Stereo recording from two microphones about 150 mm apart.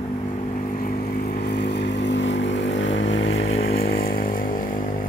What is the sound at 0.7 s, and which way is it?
Vehicle, 80° left.